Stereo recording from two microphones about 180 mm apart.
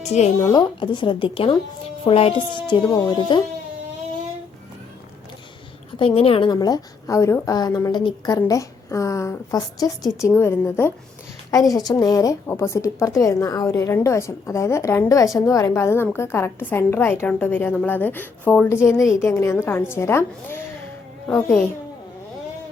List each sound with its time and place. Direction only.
0.4 s a woman's voice: 25° left (ahead or behind)
6.0 s a woman's voice: 30° left (ahead or behind); by 21.7 s 10° left (ahead or behind)